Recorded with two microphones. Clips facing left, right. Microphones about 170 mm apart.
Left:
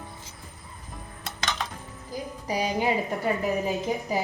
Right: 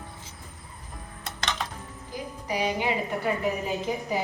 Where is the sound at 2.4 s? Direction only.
40° left (ahead or behind).